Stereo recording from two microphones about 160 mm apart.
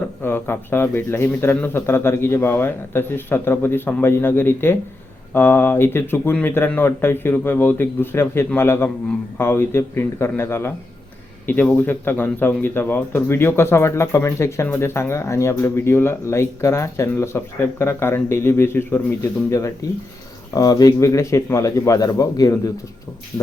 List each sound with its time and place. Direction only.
0.2 s speech: 15° left (ahead or behind)